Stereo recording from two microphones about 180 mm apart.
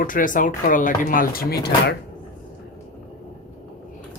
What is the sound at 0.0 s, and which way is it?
Speech, 50° left (ahead or behind).